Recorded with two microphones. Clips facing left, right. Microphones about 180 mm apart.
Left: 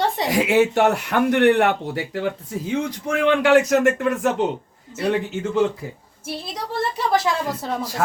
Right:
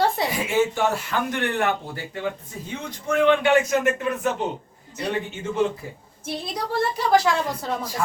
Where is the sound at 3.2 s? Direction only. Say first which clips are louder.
Left 2 dB; 85° left.